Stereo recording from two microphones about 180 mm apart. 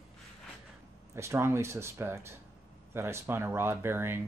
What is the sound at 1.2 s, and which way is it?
Speech, 15° right (ahead or behind).